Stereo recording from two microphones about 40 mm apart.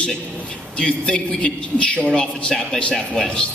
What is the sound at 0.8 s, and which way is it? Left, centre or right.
A man's voice, left.